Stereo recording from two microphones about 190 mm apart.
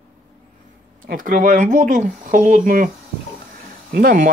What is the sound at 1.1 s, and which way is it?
Speech, 45° right (ahead or behind).